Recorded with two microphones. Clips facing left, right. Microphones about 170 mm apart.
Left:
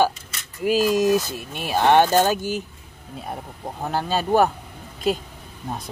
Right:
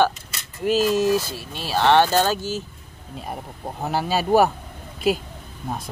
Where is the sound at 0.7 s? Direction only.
10° left (ahead or behind).